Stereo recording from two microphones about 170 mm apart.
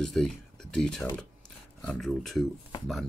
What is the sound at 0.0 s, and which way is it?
Speech, centre (ahead or behind).